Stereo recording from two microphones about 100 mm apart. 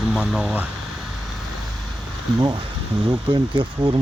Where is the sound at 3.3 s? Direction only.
50° right (ahead or behind).